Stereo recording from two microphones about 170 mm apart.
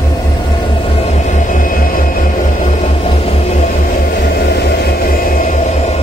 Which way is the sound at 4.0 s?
65° left (ahead or behind).